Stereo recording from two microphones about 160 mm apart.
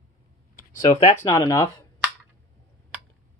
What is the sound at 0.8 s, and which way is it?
Speech, 35° left (ahead or behind).